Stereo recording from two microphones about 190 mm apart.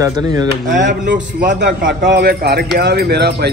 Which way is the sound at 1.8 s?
45° right (ahead or behind).